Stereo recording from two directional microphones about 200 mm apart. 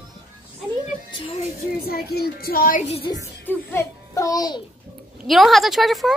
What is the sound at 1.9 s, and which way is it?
A child's voice, 50° left (ahead or behind).